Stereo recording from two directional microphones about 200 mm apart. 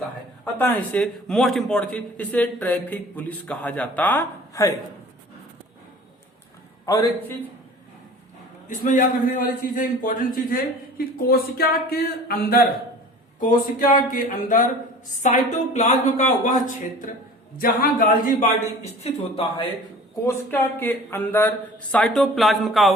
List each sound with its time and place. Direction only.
0.6 s a man's voice: 10° left (ahead or behind)
6.8 s a man's voice: 15° left (ahead or behind)
8.6 s a man's voice: 40° left (ahead or behind)
20.2 s a man's voice: 10° left (ahead or behind)